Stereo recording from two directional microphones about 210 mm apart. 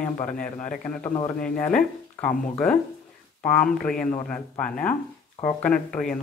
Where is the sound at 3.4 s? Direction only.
5° left (ahead or behind).